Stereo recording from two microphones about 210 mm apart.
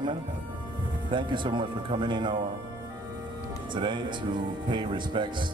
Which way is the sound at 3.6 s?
20° right (ahead or behind).